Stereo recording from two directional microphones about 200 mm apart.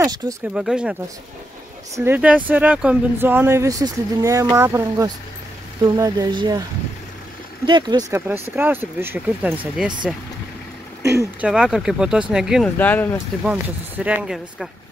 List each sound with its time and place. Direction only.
0.0 s speech: 15° right (ahead or behind)
0.6 s speech: 5° right (ahead or behind)
2.0 s speech: 10° right (ahead or behind)
7.6 s speech: 20° right (ahead or behind)
8.3 s speech: 10° right (ahead or behind)
11.0 s speech: 15° right (ahead or behind)
12.7 s speech: 10° left (ahead or behind)
13.5 s speech: 5° right (ahead or behind)